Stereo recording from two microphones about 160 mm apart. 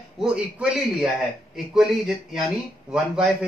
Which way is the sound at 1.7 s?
Centre (ahead or behind).